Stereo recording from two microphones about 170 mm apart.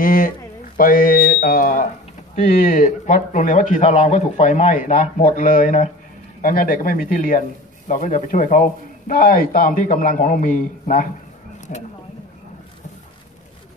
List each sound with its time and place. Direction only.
0.0 s speech: 55° left (ahead or behind)